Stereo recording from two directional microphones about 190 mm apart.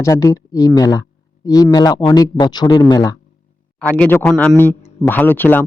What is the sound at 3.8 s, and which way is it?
Speech, 5° left (ahead or behind).